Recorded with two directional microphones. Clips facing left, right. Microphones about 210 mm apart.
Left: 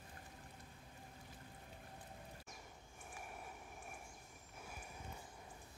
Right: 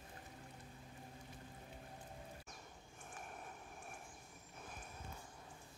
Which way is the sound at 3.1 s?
10° left (ahead or behind).